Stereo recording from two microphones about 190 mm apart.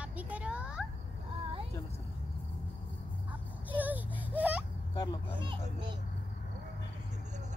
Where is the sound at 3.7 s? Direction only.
10° right (ahead or behind).